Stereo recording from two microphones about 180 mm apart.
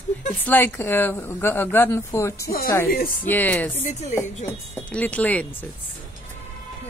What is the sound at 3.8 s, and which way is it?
Speech, 35° left (ahead or behind).